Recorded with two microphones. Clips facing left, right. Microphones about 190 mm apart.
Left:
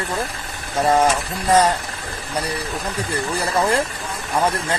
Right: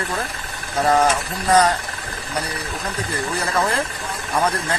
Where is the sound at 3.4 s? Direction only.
30° left (ahead or behind).